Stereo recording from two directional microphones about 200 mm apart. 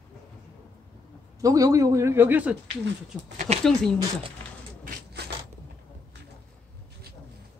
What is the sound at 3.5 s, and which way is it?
Speech, 30° right (ahead or behind).